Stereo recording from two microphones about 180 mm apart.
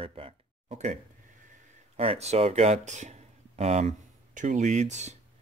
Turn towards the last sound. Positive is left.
turn(degrees=-40)  # may be behind; listen again after turning